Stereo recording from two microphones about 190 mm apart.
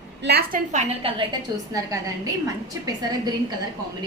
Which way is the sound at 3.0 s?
20° right (ahead or behind).